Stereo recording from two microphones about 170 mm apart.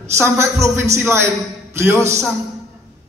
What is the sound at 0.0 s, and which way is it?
A man's voice, 15° right (ahead or behind).